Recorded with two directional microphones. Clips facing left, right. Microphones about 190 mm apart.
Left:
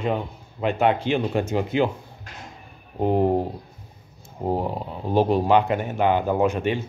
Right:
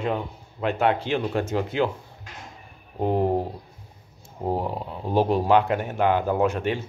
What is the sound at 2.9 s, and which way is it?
Speech, 5° left (ahead or behind).